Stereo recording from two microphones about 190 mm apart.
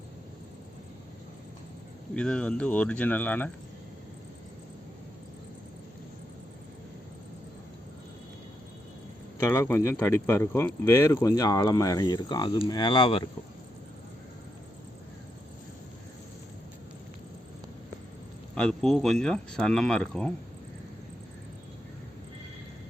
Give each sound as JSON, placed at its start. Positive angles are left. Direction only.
{"t": 2.1, "sound": "speech", "side_deg": 5}
{"t": 9.4, "sound": "speech", "side_deg": 15}
{"t": 18.5, "sound": "speech", "side_deg": 5}